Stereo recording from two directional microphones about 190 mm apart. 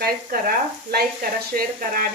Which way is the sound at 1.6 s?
50° right (ahead or behind).